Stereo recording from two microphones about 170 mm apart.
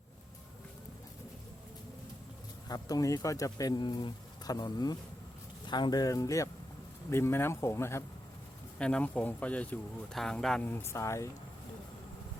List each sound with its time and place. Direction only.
2.6 s speech: 20° left (ahead or behind)